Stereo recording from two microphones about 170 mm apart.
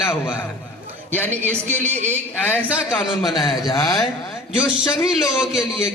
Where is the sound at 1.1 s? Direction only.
10° left (ahead or behind).